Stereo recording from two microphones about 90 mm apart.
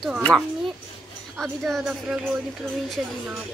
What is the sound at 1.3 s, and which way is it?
Speech, 5° left (ahead or behind).